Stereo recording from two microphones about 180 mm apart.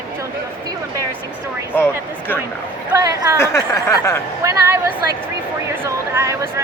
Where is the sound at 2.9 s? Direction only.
20° right (ahead or behind).